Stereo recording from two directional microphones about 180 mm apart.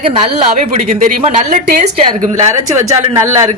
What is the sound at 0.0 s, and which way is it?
A woman's voice, 40° right (ahead or behind).